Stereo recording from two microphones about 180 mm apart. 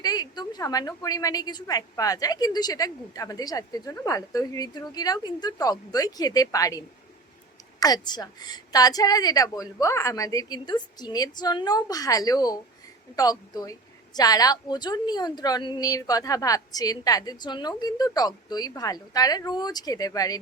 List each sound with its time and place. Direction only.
0.0 s a woman's voice: 20° left (ahead or behind)